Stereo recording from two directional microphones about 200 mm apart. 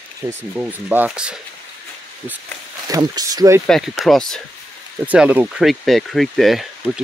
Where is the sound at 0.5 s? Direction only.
10° right (ahead or behind).